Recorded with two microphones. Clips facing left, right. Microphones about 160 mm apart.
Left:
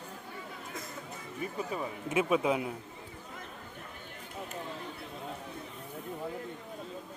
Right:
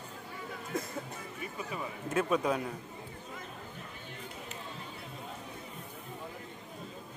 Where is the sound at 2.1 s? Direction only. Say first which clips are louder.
Left 2 dB; 10° left (ahead or behind).